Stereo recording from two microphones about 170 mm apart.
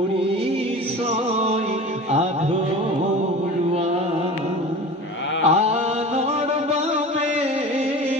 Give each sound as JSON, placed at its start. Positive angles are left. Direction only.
{"t": 5.5, "sound": "mantra", "side_deg": -40}